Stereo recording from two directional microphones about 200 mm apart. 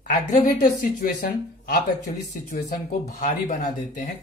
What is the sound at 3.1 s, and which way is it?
Speech, 35° left (ahead or behind).